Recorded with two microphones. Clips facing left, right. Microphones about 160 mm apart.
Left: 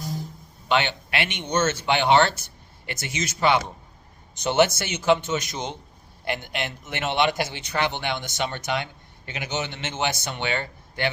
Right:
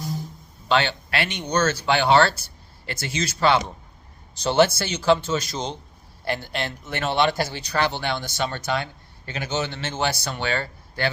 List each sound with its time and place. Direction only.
0.7 s a man's voice: 20° left (ahead or behind)